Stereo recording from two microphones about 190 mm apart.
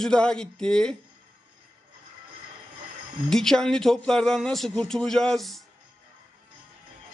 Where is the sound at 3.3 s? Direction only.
Centre (ahead or behind).